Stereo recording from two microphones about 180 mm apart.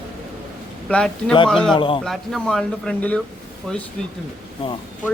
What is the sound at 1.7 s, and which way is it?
Speech, 25° left (ahead or behind).